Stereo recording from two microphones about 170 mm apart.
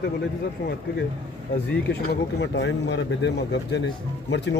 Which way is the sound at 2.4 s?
90° left.